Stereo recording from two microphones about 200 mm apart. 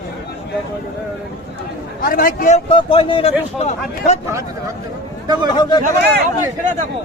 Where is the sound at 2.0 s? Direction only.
45° left (ahead or behind).